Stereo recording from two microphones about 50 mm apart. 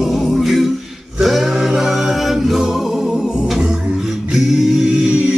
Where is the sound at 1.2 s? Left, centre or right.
Centre.